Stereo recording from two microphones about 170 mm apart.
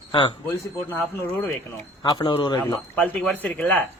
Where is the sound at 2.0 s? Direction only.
25° left (ahead or behind).